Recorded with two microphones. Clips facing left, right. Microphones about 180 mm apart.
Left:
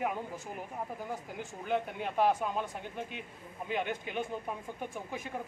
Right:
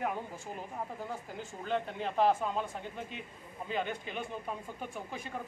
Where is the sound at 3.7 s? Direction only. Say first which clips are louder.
Left 1 dB; 15° left (ahead or behind).